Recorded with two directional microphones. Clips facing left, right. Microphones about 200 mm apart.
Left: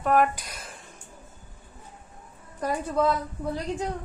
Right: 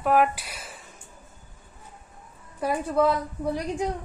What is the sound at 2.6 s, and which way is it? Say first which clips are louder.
Speech: right 2 dB; 10° right (ahead or behind).